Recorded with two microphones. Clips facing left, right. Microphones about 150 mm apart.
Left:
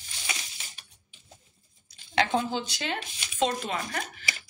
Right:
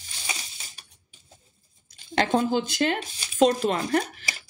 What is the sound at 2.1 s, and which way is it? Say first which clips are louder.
Speech: right 4 dB; 45° right (ahead or behind).